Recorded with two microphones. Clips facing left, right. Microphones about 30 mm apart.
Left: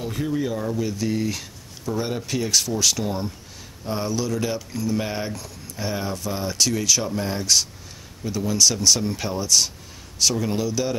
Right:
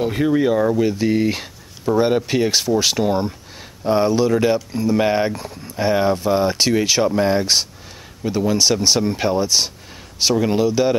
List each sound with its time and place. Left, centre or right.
0.0 s speech: right